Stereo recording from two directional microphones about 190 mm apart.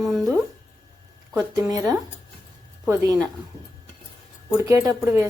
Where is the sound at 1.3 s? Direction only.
15° right (ahead or behind).